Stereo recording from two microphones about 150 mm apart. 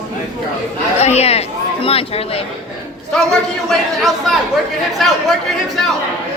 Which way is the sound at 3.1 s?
Centre (ahead or behind).